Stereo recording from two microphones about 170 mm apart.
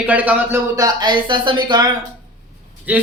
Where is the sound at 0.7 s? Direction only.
25° right (ahead or behind).